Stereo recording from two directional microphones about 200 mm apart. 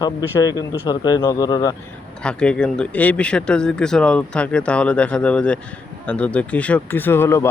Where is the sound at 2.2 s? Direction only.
5° left (ahead or behind).